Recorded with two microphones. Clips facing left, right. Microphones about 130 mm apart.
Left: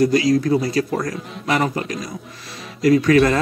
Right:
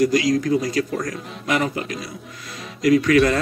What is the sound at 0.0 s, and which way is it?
A man's voice, 30° left (ahead or behind).